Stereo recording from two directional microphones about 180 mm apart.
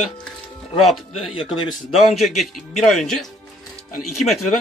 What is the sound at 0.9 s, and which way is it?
Speech, centre (ahead or behind).